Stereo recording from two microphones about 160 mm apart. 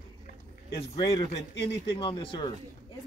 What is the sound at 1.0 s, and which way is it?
Speech, 25° left (ahead or behind).